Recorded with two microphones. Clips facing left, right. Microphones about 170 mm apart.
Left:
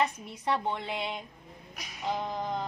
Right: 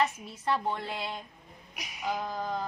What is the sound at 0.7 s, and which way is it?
Speech, 20° left (ahead or behind).